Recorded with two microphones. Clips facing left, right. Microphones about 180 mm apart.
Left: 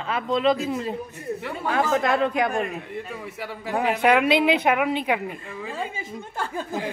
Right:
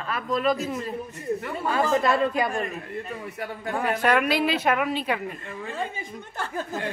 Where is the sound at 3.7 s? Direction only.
15° left (ahead or behind).